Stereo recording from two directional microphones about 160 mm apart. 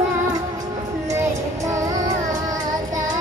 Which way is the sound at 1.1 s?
20° right (ahead or behind).